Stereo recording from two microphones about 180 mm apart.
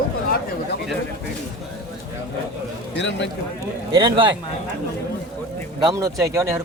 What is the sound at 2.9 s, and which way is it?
Speech, 80° left.